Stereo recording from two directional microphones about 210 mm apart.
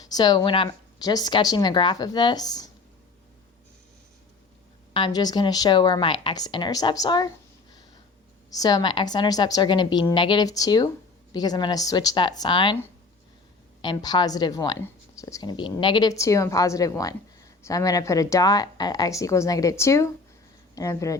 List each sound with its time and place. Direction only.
0.0 s a woman's voice: 20° left (ahead or behind)
4.9 s a woman's voice: 20° left (ahead or behind)
8.4 s a woman's voice: 15° left (ahead or behind)
13.8 s a woman's voice: 20° left (ahead or behind)